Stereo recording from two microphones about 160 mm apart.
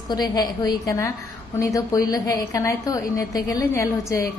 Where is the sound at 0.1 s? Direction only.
25° left (ahead or behind).